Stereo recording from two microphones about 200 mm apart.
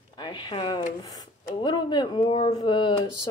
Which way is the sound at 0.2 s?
25° left (ahead or behind).